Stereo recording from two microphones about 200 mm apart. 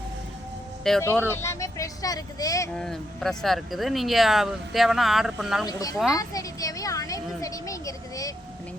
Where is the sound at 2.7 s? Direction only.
Centre (ahead or behind).